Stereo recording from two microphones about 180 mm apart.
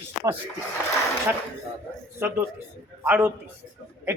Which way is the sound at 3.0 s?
10° right (ahead or behind).